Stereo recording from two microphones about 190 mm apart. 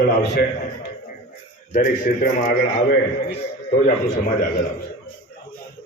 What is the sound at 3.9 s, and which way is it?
Speech, 50° left (ahead or behind).